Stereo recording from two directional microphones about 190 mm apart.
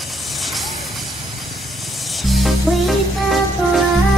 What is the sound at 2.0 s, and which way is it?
Music, centre (ahead or behind).